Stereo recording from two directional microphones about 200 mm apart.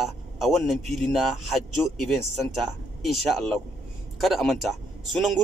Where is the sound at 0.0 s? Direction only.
Centre (ahead or behind).